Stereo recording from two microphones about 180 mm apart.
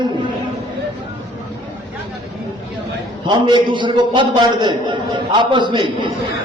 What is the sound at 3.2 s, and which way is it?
A man's voice, 25° right (ahead or behind).